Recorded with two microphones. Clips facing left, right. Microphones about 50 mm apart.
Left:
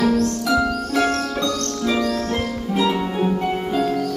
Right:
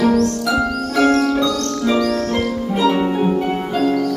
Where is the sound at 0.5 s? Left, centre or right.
Centre.